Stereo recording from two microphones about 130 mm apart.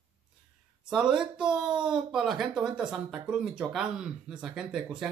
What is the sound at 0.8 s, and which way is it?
Speech, 5° right (ahead or behind).